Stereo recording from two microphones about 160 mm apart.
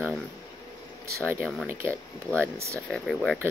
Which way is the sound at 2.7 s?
5° left (ahead or behind).